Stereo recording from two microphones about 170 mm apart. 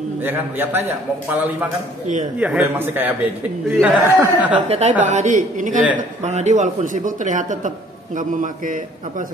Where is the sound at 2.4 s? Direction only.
10° right (ahead or behind).